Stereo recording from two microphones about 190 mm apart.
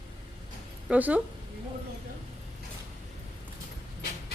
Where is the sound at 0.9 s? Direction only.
10° right (ahead or behind).